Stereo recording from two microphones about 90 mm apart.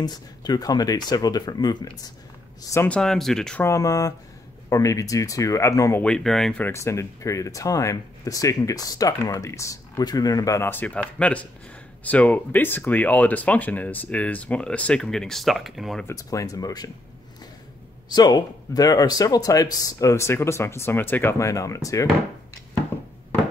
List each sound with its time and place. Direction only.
0.0 s speech: 50° left (ahead or behind)
2.9 s speech: 5° left (ahead or behind)
3.6 s speech: 40° left (ahead or behind)
6.0 s speech: 5° left (ahead or behind)
6.6 s speech: 30° left (ahead or behind)
10.6 s speech: 20° left (ahead or behind); by 16.0 s centre (ahead or behind)
16.1 s speech: 40° left (ahead or behind)
18.1 s speech: 45° left (ahead or behind); by 21.4 s 25° left (ahead or behind)
21.4 s speech: 35° left (ahead or behind)